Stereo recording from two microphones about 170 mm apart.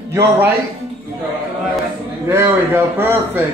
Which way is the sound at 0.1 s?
15° right (ahead or behind).